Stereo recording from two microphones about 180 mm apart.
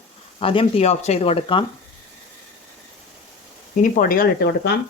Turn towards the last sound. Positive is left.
turn(degrees=65)  # may be behind; listen again after turning